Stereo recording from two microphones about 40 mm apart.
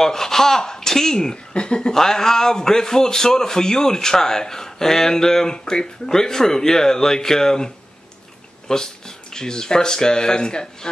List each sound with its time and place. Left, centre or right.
0.0 s speech: centre
1.3 s speech: left